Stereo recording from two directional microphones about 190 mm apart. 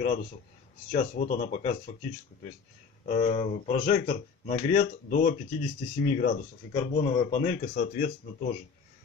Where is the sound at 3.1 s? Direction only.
40° left (ahead or behind).